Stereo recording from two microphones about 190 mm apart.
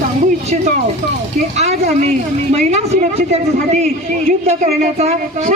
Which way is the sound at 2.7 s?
35° right (ahead or behind).